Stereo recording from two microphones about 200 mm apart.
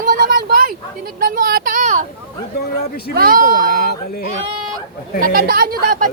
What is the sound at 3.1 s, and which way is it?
Speech, 45° right (ahead or behind).